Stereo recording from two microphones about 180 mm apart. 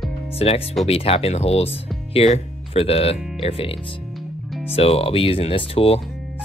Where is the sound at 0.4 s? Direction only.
35° left (ahead or behind).